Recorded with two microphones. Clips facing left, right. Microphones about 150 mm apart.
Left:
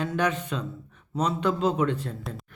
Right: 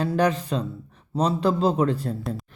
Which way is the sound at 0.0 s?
35° right (ahead or behind).